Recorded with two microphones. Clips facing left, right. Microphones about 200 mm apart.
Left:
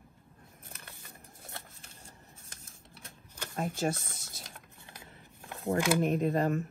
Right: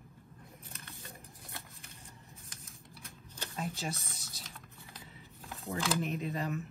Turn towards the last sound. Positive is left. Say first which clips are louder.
# left 8 dB
turn(degrees=50)  # may be behind; listen again after turning